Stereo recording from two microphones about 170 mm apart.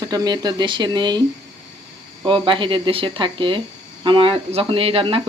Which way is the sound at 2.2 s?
30° right (ahead or behind).